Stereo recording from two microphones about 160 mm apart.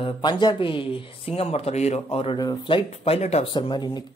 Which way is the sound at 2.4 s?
25° left (ahead or behind).